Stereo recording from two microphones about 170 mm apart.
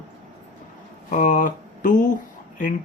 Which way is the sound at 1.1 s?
50° left (ahead or behind).